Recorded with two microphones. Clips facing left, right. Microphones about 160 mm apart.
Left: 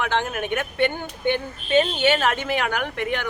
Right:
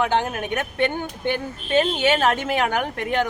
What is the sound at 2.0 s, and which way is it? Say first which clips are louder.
Speech: right 1 dB; 40° right (ahead or behind).